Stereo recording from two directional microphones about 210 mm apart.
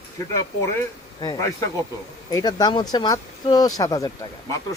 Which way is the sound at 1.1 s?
20° left (ahead or behind).